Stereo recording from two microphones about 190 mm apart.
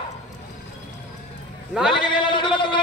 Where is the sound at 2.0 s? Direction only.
25° left (ahead or behind).